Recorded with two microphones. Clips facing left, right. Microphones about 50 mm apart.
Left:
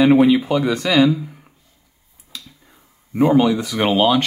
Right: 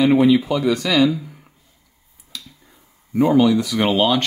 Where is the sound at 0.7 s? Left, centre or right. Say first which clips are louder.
Even; left.